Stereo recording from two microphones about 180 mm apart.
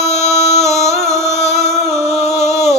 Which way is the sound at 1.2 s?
15° right (ahead or behind).